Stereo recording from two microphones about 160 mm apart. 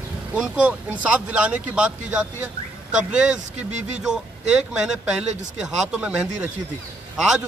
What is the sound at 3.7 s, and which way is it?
Speech, 45° right (ahead or behind).